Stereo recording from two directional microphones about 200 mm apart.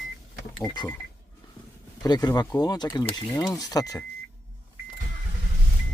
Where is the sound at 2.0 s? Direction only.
20° left (ahead or behind).